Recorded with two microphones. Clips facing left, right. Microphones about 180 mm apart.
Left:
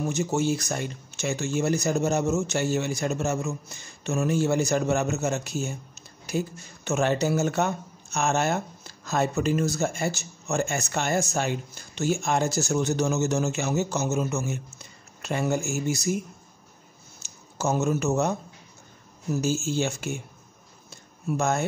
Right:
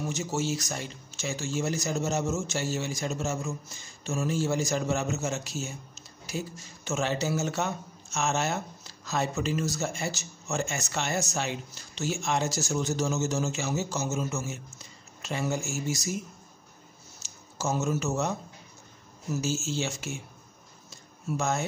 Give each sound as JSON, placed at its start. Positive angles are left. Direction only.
{"t": 0.1, "sound": "speech", "side_deg": 55}
{"t": 17.6, "sound": "speech", "side_deg": 60}
{"t": 19.4, "sound": "speech", "side_deg": 55}
{"t": 21.4, "sound": "speech", "side_deg": 55}